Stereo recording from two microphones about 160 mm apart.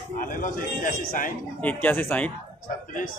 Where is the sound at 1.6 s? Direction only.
10° left (ahead or behind).